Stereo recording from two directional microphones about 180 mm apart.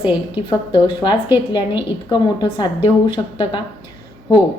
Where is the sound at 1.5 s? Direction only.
25° left (ahead or behind).